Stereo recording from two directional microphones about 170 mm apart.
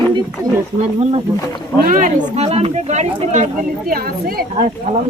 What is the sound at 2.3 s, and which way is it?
Speech, 40° right (ahead or behind).